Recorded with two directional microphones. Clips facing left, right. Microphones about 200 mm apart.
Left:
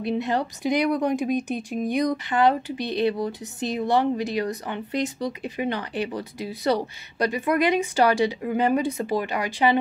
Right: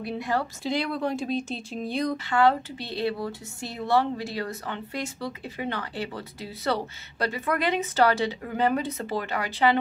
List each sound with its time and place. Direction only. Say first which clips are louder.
0.0 s speech: left 4 dB; 20° left (ahead or behind)